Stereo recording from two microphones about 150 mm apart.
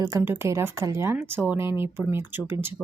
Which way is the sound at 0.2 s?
15° right (ahead or behind).